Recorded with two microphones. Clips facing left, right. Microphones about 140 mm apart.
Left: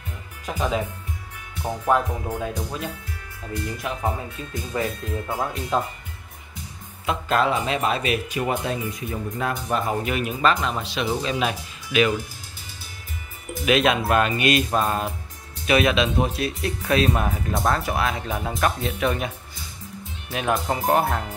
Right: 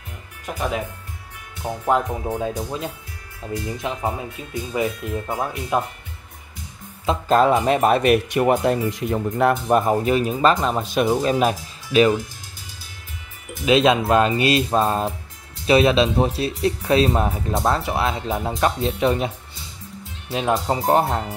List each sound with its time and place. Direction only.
1.9 s speech: 25° right (ahead or behind)
4.0 s speech: 10° right (ahead or behind)
7.1 s speech: 35° right (ahead or behind)
10.0 s speech: 35° right (ahead or behind)
13.7 s speech: 25° right (ahead or behind)